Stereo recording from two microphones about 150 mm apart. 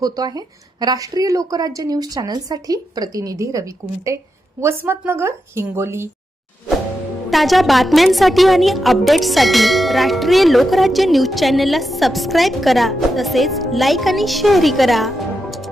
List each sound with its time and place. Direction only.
0.0 s a woman's voice: 25° right (ahead or behind)
4.6 s a woman's voice: 15° right (ahead or behind)
7.3 s a woman's voice: centre (ahead or behind)